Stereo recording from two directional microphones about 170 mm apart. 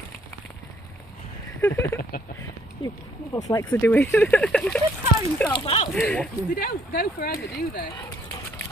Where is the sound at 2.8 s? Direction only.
20° left (ahead or behind); by 4.8 s 5° left (ahead or behind).